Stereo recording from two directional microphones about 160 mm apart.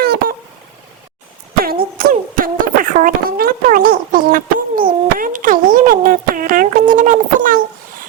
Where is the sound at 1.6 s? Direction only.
65° right (ahead or behind).